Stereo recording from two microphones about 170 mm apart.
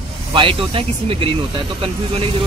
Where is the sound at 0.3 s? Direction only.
30° right (ahead or behind).